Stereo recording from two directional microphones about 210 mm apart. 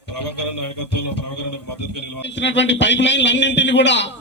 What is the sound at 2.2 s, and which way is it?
A man's voice, 55° left (ahead or behind).